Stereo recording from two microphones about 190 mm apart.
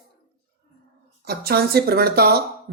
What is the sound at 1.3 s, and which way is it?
Speech, 55° right (ahead or behind).